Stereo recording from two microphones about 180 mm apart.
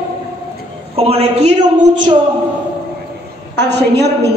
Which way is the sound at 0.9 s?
35° right (ahead or behind).